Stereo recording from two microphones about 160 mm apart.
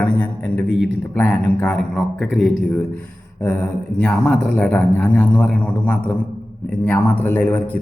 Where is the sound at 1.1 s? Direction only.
10° left (ahead or behind).